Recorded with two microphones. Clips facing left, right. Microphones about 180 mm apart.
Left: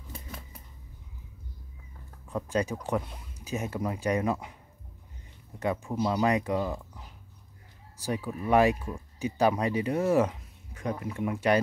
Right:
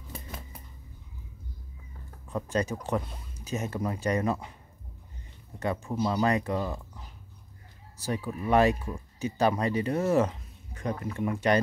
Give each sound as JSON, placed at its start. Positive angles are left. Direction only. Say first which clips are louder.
{"t": 2.3, "sound": "speech", "louder": "even", "side_deg": 10}
{"t": 5.9, "sound": "speech", "louder": "even", "side_deg": 10}
{"t": 8.0, "sound": "speech", "louder": "even", "side_deg": 10}